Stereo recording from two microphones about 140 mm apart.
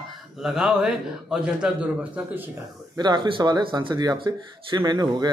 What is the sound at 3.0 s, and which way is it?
Speech, 30° right (ahead or behind).